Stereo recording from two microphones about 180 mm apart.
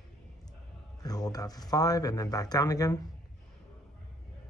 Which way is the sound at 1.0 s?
20° left (ahead or behind).